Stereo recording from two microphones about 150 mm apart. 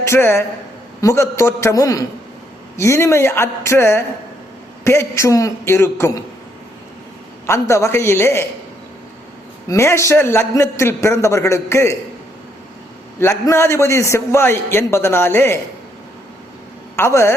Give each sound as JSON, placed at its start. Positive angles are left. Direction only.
{"t": 0.1, "sound": "a man's voice", "side_deg": 15}
{"t": 7.4, "sound": "a man's voice", "side_deg": 20}
{"t": 9.6, "sound": "a man's voice", "side_deg": 20}
{"t": 13.1, "sound": "a man's voice", "side_deg": 20}
{"t": 17.0, "sound": "a man's voice", "side_deg": 20}